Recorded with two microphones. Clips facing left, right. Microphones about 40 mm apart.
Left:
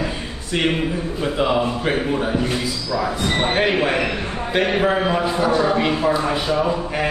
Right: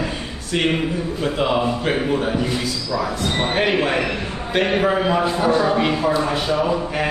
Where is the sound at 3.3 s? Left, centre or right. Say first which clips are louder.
Left 2 dB; left.